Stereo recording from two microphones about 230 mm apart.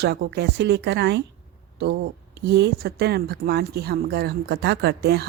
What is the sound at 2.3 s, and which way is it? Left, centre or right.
Speech, right.